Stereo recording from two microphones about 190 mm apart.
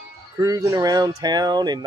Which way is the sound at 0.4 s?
20° right (ahead or behind).